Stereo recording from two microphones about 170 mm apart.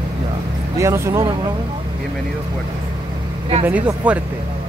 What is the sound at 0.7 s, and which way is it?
Speech, 15° right (ahead or behind).